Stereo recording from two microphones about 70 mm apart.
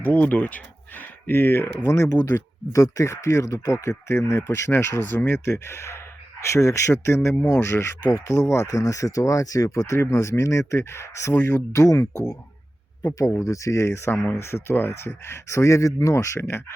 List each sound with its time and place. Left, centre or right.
0.0 s speech: left
2.3 s speech: left
7.3 s speech: left
7.6 s speech: left
8.6 s speech: left